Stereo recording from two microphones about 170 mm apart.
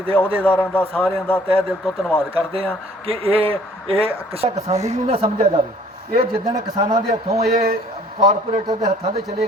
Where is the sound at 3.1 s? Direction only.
35° right (ahead or behind).